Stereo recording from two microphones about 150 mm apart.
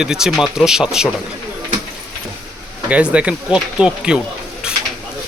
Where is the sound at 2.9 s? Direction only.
5° right (ahead or behind).